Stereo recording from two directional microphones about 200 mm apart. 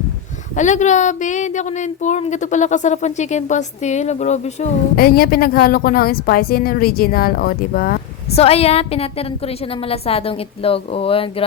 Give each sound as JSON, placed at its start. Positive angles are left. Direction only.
{"t": 0.5, "sound": "speech", "side_deg": 35}
{"t": 4.9, "sound": "a woman's voice", "side_deg": 50}
{"t": 8.4, "sound": "a woman's voice", "side_deg": 30}